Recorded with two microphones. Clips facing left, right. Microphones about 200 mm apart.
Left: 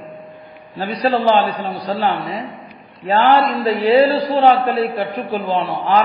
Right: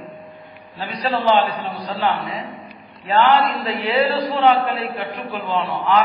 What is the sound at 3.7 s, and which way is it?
A man's voice, 35° left (ahead or behind).